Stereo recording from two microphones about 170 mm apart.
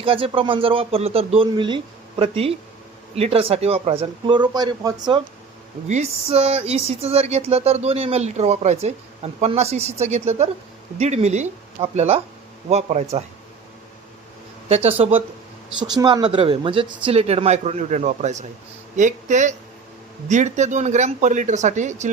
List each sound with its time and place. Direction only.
0.0 s speech: 30° right (ahead or behind)
5.9 s speech: 40° right (ahead or behind)
14.7 s speech: 35° right (ahead or behind)
15.8 s speech: 25° right (ahead or behind); by 22.1 s 45° right (ahead or behind)